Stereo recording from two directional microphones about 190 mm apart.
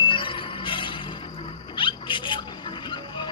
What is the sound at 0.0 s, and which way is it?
Music, 25° left (ahead or behind).